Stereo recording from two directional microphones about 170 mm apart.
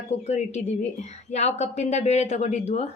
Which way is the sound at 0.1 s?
40° left (ahead or behind).